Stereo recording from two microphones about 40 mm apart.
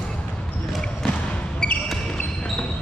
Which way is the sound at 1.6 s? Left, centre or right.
Centre.